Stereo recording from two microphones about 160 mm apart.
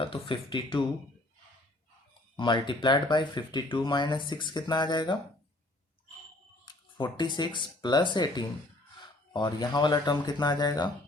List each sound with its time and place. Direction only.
0.0 s speech: 30° left (ahead or behind)
2.3 s speech: 30° left (ahead or behind)
6.9 s speech: 30° left (ahead or behind)